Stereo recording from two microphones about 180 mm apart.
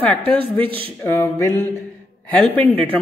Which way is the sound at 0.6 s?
30° right (ahead or behind).